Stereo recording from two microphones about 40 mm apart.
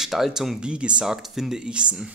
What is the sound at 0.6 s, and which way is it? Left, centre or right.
Speech, right.